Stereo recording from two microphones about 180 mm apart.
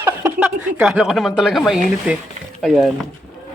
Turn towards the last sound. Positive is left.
turn(degrees=0)  # may be behind; listen again after turning